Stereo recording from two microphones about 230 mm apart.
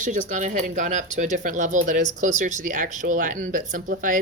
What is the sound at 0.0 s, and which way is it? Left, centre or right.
Speech, right.